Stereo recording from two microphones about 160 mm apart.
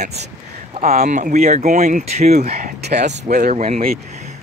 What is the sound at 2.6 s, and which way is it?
Speech, 90° right.